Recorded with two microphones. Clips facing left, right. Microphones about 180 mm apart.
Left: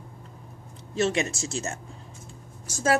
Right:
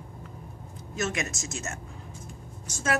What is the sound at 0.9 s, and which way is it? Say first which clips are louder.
A woman's voice: left 6 dB; 30° left (ahead or behind).